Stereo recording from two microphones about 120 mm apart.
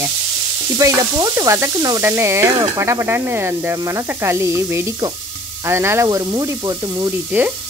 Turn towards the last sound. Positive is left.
turn(degrees=-15)  # may be behind; listen again after turning